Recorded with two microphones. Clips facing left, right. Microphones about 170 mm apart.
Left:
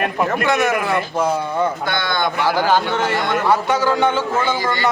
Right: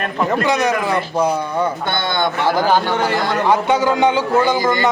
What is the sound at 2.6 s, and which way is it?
Speech, 15° right (ahead or behind).